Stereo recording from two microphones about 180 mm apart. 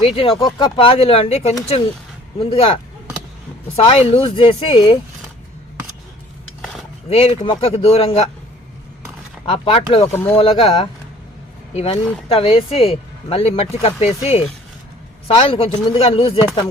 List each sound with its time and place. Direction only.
0.0 s speech: 30° left (ahead or behind)
3.8 s speech: 35° left (ahead or behind)
7.1 s speech: 35° left (ahead or behind)
9.5 s speech: 35° left (ahead or behind)